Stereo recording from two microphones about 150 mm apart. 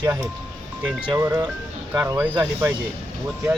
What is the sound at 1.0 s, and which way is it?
Speech, 10° right (ahead or behind).